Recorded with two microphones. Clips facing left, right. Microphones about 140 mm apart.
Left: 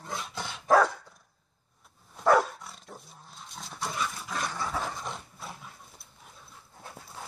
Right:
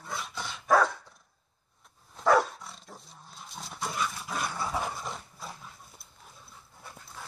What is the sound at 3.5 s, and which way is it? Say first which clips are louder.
Dog: even; 10° right (ahead or behind).